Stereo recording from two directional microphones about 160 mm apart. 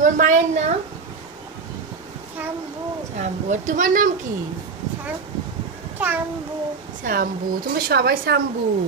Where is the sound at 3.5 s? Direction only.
50° right (ahead or behind).